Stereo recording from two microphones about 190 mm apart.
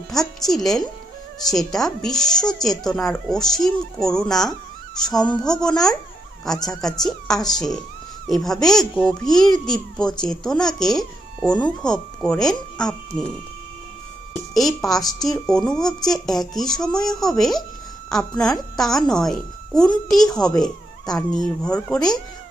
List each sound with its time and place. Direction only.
0.1 s speech: centre (ahead or behind)
14.5 s speech: centre (ahead or behind)